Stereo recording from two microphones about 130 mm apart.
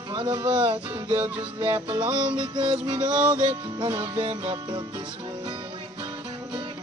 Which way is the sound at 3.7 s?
35° right (ahead or behind).